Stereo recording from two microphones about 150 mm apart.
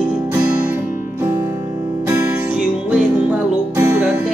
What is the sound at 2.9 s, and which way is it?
Music, 10° right (ahead or behind).